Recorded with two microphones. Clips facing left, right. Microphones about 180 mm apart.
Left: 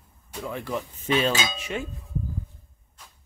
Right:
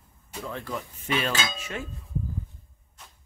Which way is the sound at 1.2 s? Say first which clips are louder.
Left 4 dB; 20° left (ahead or behind).